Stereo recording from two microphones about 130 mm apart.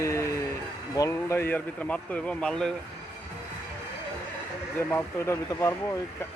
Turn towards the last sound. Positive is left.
turn(degrees=20)  # may be behind; listen again after turning